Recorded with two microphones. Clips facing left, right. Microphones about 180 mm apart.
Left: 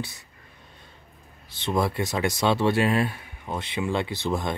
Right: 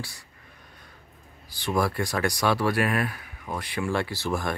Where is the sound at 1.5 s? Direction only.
25° left (ahead or behind).